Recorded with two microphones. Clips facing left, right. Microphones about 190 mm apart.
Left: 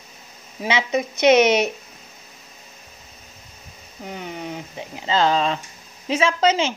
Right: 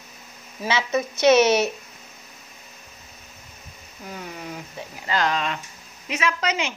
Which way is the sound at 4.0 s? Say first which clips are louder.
Left 4 dB; 25° left (ahead or behind).